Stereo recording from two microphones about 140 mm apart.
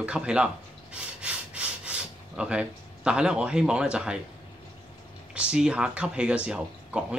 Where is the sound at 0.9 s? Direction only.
10° right (ahead or behind).